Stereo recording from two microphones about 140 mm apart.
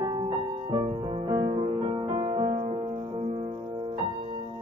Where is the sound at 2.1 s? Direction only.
30° right (ahead or behind).